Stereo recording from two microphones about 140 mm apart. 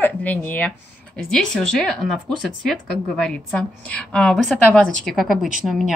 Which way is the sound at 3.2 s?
5° left (ahead or behind).